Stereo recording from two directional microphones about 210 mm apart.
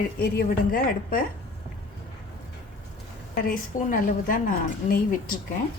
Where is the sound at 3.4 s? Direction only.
40° left (ahead or behind).